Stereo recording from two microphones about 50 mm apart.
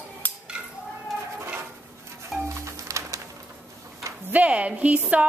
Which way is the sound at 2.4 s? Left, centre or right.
Right.